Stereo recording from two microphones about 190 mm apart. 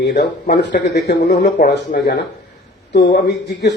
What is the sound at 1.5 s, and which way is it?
A man's voice, 50° left (ahead or behind).